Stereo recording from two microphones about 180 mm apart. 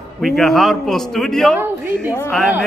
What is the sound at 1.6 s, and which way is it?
Speech, 10° right (ahead or behind).